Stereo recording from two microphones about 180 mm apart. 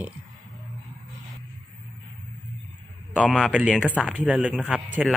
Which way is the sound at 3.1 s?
Centre (ahead or behind).